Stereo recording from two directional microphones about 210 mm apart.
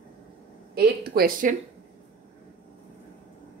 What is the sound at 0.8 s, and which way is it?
Speech, 45° right (ahead or behind).